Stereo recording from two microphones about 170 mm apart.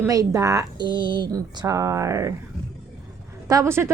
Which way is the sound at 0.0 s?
20° right (ahead or behind).